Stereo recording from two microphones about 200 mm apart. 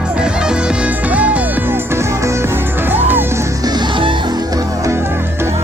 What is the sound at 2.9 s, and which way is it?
Music, 10° right (ahead or behind).